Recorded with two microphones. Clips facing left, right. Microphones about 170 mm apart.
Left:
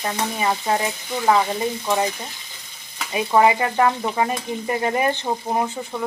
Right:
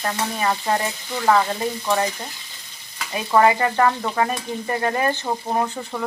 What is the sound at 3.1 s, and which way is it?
Stir, 10° left (ahead or behind).